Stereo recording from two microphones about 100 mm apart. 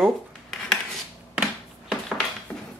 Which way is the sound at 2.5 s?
10° left (ahead or behind).